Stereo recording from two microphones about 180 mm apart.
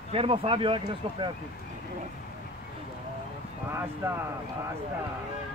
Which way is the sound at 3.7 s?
15° right (ahead or behind).